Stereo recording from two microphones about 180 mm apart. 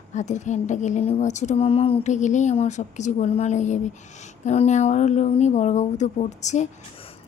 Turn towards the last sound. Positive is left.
turn(degrees=40)  # may be behind; listen again after turning